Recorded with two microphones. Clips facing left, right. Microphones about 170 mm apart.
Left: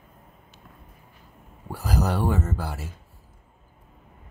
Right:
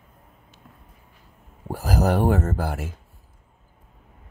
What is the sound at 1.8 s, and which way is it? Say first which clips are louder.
Speech: right 4 dB; 50° right (ahead or behind).